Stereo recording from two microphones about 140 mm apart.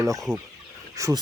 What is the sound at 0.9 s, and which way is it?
Speech, 25° right (ahead or behind).